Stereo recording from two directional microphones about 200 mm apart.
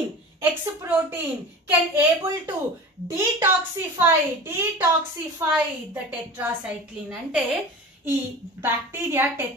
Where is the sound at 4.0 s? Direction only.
10° right (ahead or behind).